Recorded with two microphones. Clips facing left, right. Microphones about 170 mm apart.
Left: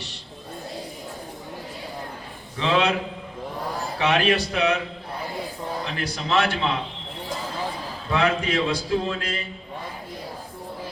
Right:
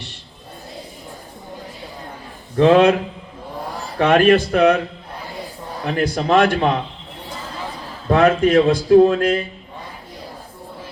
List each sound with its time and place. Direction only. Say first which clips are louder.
2.6 s a man's voice: right 10 dB; 50° right (ahead or behind)
5.8 s a man's voice: right 9 dB; 50° right (ahead or behind)
8.1 s a man's voice: right 9 dB; 50° right (ahead or behind)